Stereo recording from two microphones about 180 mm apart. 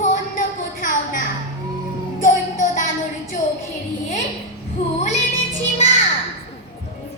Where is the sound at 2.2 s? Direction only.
45° left (ahead or behind).